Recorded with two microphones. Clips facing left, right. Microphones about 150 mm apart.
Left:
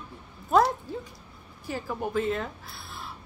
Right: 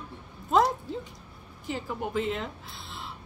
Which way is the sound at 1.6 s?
20° right (ahead or behind).